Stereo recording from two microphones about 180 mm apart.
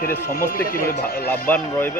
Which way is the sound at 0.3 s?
55° left (ahead or behind).